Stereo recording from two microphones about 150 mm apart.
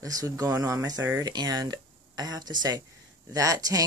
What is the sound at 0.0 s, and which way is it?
Speech, 25° right (ahead or behind).